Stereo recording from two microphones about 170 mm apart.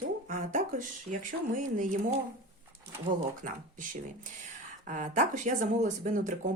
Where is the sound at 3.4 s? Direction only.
50° right (ahead or behind).